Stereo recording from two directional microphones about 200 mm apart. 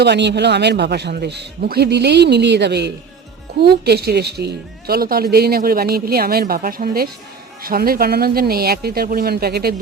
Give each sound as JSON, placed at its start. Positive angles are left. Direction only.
{"t": 0.0, "sound": "a man's voice", "side_deg": -60}